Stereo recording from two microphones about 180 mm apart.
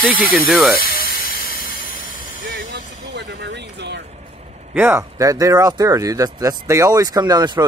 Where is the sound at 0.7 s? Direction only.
55° left (ahead or behind).